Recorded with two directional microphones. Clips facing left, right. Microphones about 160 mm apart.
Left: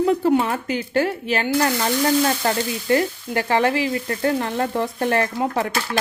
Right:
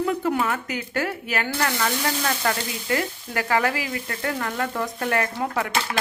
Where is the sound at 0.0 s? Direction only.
30° left (ahead or behind).